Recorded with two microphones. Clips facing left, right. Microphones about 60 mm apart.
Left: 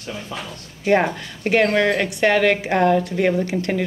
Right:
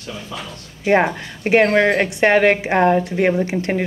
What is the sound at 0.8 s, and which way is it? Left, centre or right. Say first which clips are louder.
A woman's voice: right 2 dB; right.